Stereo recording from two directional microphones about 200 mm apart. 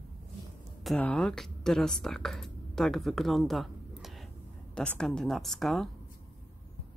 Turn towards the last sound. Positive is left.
turn(degrees=0)  # may be behind; listen again after turning